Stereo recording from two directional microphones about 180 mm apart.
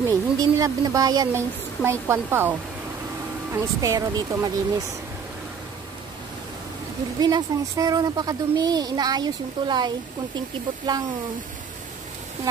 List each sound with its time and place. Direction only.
0.0 s a child's voice: 20° right (ahead or behind)
3.5 s speech: 15° right (ahead or behind)
7.2 s a child's voice: 20° right (ahead or behind)